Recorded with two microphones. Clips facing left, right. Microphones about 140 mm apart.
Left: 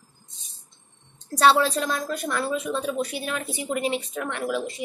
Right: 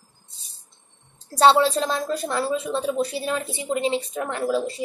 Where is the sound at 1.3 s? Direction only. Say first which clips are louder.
Right 3 dB; 25° right (ahead or behind).